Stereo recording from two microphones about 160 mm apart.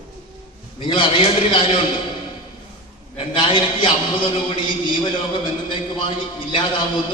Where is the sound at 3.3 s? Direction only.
30° left (ahead or behind).